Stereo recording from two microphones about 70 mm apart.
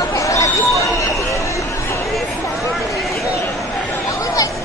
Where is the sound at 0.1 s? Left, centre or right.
Left.